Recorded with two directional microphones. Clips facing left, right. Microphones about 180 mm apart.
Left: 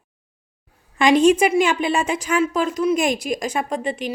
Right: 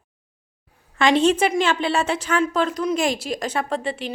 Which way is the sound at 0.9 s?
15° left (ahead or behind).